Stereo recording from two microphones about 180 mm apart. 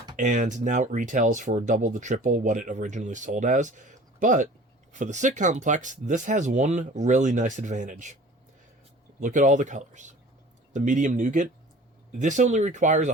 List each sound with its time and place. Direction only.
0.2 s speech: 45° right (ahead or behind)
9.2 s speech: 45° right (ahead or behind)